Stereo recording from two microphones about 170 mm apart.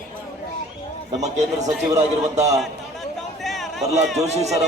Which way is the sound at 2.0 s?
40° right (ahead or behind).